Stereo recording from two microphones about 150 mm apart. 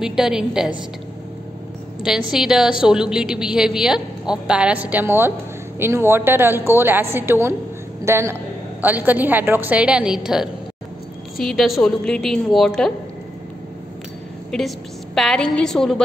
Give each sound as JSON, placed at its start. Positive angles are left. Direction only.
{"t": 0.0, "sound": "a woman's voice", "side_deg": -5}
{"t": 2.0, "sound": "a woman's voice", "side_deg": -5}
{"t": 14.5, "sound": "a woman's voice", "side_deg": 5}